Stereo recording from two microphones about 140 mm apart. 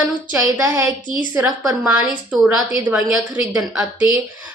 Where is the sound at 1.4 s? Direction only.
5° right (ahead or behind).